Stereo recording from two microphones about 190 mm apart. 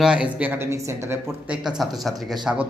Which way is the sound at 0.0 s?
5° right (ahead or behind).